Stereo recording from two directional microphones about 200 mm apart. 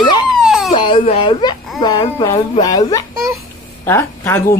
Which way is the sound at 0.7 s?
25° left (ahead or behind).